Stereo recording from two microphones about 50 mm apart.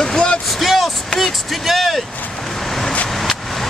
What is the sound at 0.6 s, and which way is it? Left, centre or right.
Speech, centre.